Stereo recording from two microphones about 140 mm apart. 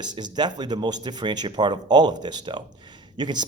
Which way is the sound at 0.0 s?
30° right (ahead or behind).